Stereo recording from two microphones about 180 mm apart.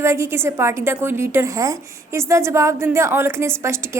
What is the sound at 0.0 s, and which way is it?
A woman's voice, 15° right (ahead or behind).